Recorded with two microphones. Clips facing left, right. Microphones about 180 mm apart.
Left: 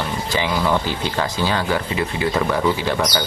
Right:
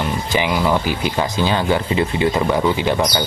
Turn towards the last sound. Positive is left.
turn(degrees=-20)  # may be behind; listen again after turning